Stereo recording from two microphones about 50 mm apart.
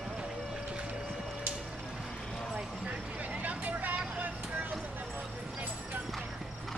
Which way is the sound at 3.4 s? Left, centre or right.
Right.